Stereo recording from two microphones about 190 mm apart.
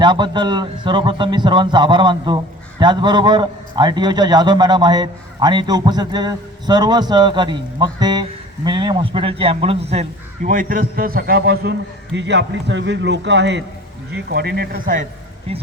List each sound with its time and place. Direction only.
0.0 s a man's voice: 25° right (ahead or behind); by 15.0 s 50° right (ahead or behind)